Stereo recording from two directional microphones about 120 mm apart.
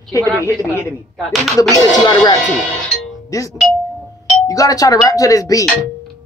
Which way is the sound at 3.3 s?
30° left (ahead or behind).